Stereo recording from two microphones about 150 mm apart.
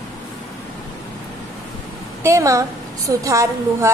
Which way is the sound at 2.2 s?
20° right (ahead or behind).